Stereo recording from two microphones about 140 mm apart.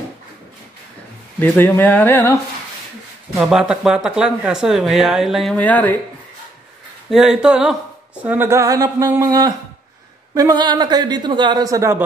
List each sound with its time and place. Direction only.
1.6 s speech: 15° left (ahead or behind)
3.3 s speech: 5° right (ahead or behind)
5.6 s speech: 10° left (ahead or behind)
7.1 s speech: 5° right (ahead or behind)
8.2 s a sound: 15° right (ahead or behind)
10.3 s a woman's voice: 25° right (ahead or behind)